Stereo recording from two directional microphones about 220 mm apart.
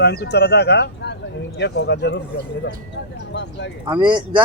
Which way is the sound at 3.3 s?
50° left (ahead or behind).